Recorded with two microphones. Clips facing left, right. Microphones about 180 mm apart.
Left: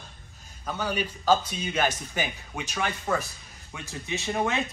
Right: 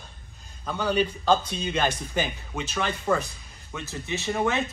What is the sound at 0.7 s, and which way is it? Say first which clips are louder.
A man's voice: right 5 dB; 10° left (ahead or behind).